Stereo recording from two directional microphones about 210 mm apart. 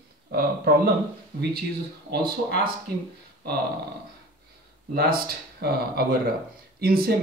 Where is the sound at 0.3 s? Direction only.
50° right (ahead or behind).